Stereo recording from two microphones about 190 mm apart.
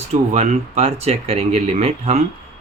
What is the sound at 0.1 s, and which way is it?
A man's voice, 35° right (ahead or behind).